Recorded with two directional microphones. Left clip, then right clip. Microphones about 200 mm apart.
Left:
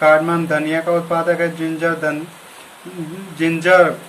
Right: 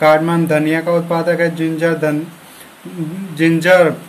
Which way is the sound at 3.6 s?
40° right (ahead or behind).